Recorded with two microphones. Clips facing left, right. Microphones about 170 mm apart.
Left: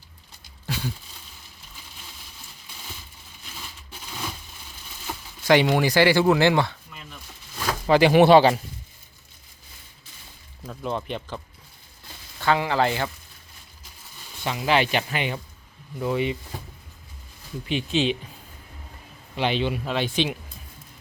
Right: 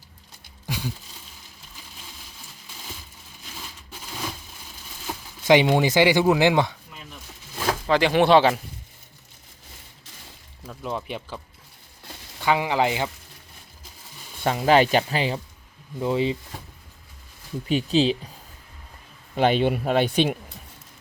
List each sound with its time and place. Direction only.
0.7 s a sound: 10° right (ahead or behind)
5.5 s speech: 20° right (ahead or behind)
7.9 s speech: 5° left (ahead or behind)
10.7 s speech: 5° right (ahead or behind)
12.4 s speech: 15° right (ahead or behind)
14.4 s speech: 45° right (ahead or behind); by 16.4 s 25° right (ahead or behind)
17.7 s speech: 40° right (ahead or behind)
19.4 s speech: 50° right (ahead or behind)